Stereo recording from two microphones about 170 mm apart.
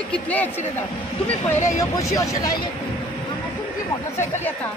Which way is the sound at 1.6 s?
20° left (ahead or behind).